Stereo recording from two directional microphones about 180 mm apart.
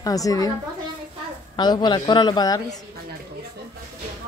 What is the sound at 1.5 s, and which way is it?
A woman's voice, 25° left (ahead or behind).